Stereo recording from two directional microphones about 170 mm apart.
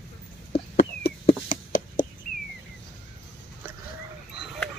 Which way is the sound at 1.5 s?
50° left (ahead or behind).